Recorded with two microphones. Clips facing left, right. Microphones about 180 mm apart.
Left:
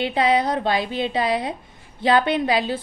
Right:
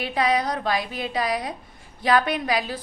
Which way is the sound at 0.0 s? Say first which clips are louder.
Left 3 dB; 25° left (ahead or behind).